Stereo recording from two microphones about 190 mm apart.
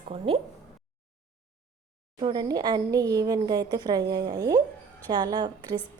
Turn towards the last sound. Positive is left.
turn(degrees=-20)  # may be behind; listen again after turning